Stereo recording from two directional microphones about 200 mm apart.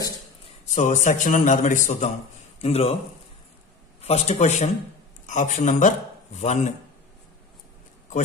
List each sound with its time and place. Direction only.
0.7 s a man's voice: 35° left (ahead or behind)
4.0 s a man's voice: 30° left (ahead or behind)